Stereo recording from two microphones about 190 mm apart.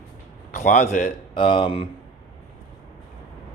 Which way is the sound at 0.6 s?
35° left (ahead or behind).